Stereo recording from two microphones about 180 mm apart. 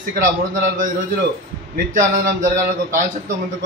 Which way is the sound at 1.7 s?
50° right (ahead or behind).